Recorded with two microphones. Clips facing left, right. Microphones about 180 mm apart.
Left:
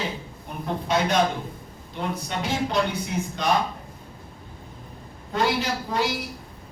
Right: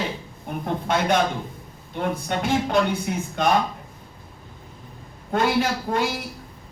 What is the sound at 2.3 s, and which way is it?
Speech, 55° right (ahead or behind).